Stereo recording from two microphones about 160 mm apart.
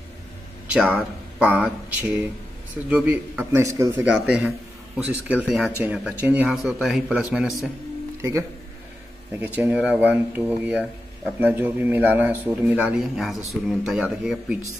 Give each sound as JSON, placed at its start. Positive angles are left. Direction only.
{"t": 0.7, "sound": "a man's voice", "side_deg": -10}
{"t": 4.0, "sound": "a man's voice", "side_deg": -10}
{"t": 8.2, "sound": "a man's voice", "side_deg": -15}